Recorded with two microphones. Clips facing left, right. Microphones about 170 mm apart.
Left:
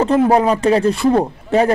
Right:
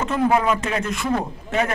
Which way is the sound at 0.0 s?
35° left (ahead or behind).